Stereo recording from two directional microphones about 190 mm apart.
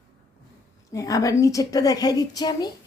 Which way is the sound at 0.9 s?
20° left (ahead or behind).